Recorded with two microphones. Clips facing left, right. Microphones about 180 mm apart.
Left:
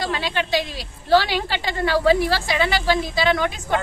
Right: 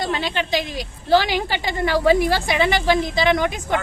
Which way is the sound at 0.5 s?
15° right (ahead or behind).